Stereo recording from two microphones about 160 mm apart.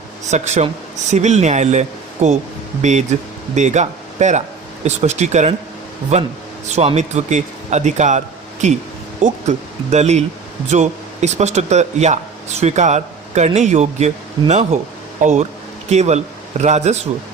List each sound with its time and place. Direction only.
0.3 s speech: 45° right (ahead or behind)
9.2 s speech: 45° right (ahead or behind)